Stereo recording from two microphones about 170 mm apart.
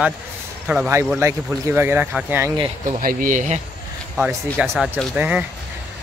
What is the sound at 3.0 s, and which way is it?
Speech, 55° right (ahead or behind).